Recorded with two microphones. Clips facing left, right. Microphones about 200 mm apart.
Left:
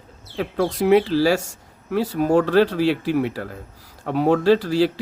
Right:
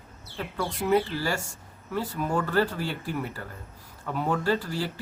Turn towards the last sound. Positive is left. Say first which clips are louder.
# left 11 dB
turn(degrees=90)